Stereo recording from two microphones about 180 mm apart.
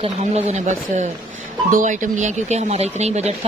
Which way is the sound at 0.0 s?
35° right (ahead or behind).